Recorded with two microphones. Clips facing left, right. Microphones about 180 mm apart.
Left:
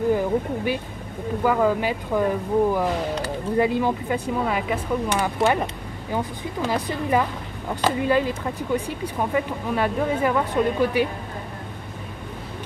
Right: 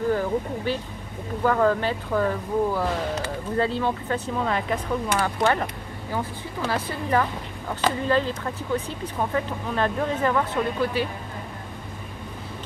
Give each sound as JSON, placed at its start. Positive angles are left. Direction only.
{"t": 0.1, "sound": "speech", "side_deg": 15}